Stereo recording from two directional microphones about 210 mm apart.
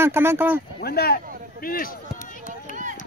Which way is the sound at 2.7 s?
40° left (ahead or behind).